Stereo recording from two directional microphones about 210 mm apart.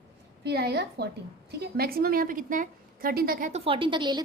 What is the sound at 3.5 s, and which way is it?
Speech, 25° right (ahead or behind).